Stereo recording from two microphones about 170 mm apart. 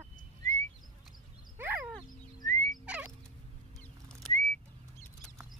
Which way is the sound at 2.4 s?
45° right (ahead or behind).